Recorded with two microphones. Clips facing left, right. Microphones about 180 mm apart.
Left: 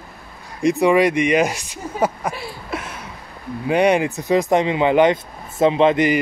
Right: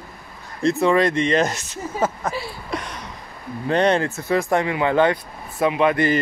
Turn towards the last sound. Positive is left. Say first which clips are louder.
# left 3 dB
turn(degrees=15)  # may be behind; listen again after turning